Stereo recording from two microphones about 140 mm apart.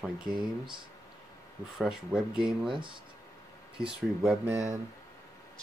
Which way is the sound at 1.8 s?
5° right (ahead or behind).